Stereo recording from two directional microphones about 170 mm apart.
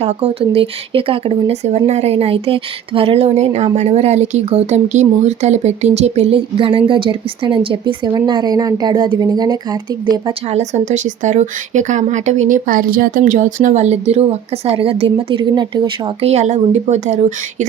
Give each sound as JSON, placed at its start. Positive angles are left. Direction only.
{"t": 0.0, "sound": "speech", "side_deg": -35}
{"t": 10.5, "sound": "speech", "side_deg": -40}
{"t": 16.3, "sound": "speech", "side_deg": -40}